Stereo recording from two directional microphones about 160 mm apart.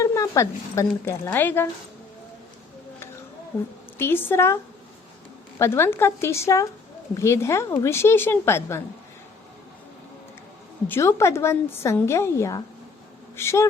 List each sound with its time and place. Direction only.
0.0 s a woman's voice: 20° left (ahead or behind)
3.9 s a woman's voice: 15° left (ahead or behind)
5.5 s a woman's voice: 15° left (ahead or behind)
10.8 s a woman's voice: 15° left (ahead or behind)